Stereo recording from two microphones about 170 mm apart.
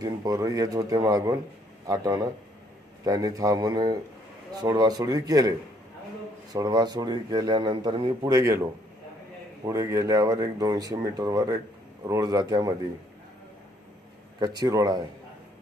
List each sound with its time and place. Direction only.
0.0 s speech: 20° right (ahead or behind)
9.7 s speech: 15° right (ahead or behind)
14.4 s speech: 25° right (ahead or behind)